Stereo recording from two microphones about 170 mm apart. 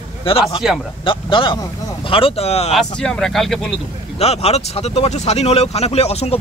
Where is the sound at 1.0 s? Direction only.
30° left (ahead or behind).